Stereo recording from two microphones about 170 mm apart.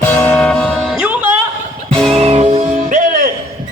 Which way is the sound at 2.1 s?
35° right (ahead or behind).